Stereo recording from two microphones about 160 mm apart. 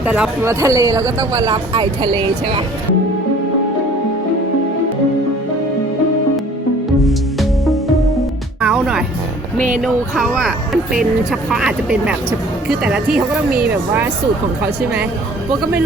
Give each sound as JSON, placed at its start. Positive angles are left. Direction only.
{"t": 0.0, "sound": "speech", "side_deg": -10}
{"t": 7.0, "sound": "music", "side_deg": 0}
{"t": 9.6, "sound": "speech", "side_deg": -55}
{"t": 9.8, "sound": "speech", "side_deg": 0}